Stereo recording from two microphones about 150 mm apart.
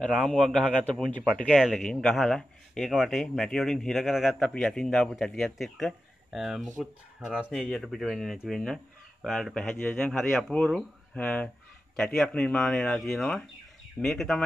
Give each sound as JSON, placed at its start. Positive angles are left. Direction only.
{"t": 0.0, "sound": "speech", "side_deg": 0}